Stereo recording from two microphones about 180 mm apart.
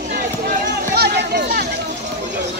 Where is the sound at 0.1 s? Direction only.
60° right (ahead or behind).